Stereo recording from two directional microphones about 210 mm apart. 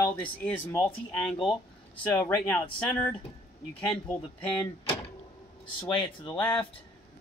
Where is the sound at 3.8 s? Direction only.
5° left (ahead or behind).